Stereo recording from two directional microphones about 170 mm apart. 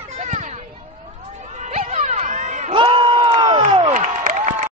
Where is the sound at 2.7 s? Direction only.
30° right (ahead or behind).